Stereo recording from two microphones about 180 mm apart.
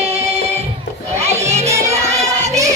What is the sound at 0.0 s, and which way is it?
Music, 35° right (ahead or behind).